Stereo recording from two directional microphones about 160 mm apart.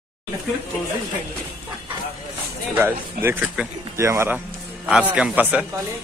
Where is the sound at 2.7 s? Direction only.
15° right (ahead or behind).